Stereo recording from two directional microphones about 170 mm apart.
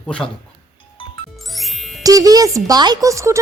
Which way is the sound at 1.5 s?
Centre (ahead or behind).